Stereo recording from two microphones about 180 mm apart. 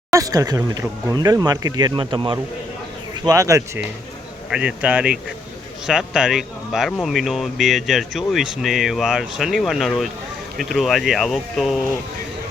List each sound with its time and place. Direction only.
0.1 s speech: 20° right (ahead or behind)
4.4 s speech: 5° right (ahead or behind)